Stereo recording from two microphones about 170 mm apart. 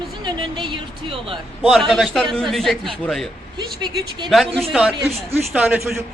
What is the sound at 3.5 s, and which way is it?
Speech, 25° right (ahead or behind).